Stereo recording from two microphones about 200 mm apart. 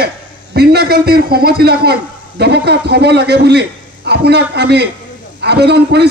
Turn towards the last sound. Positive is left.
turn(degrees=-55)  # may be behind; listen again after turning